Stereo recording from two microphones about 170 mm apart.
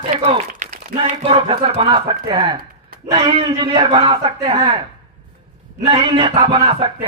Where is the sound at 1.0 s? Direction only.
35° right (ahead or behind).